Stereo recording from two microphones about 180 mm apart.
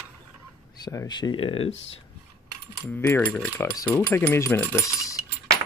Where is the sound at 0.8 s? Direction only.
20° left (ahead or behind).